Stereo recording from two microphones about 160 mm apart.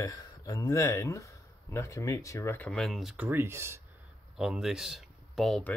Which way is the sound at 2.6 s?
5° left (ahead or behind).